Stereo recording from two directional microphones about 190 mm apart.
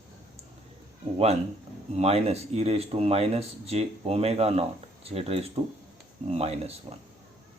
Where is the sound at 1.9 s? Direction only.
35° right (ahead or behind).